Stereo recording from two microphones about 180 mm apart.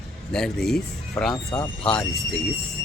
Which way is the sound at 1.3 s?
20° left (ahead or behind).